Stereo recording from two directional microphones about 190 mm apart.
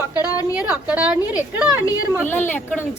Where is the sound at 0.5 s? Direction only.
10° right (ahead or behind).